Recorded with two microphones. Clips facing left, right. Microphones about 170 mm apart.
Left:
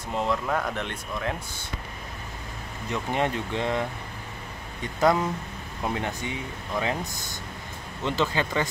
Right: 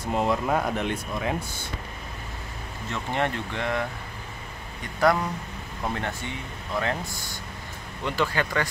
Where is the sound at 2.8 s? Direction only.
15° left (ahead or behind).